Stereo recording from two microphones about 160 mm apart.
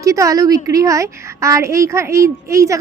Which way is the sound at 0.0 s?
20° right (ahead or behind).